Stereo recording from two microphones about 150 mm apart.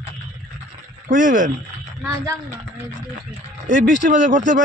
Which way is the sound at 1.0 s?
55° right (ahead or behind).